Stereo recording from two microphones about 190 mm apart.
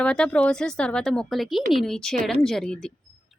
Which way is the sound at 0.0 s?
5° left (ahead or behind).